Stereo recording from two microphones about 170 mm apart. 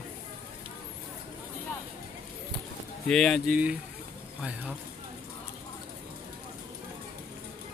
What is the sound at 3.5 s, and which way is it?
Speech, 10° right (ahead or behind).